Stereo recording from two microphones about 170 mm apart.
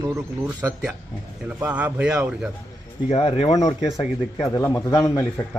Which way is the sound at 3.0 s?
35° left (ahead or behind).